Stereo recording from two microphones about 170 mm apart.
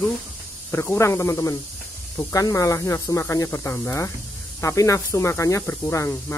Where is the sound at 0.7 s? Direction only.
15° left (ahead or behind).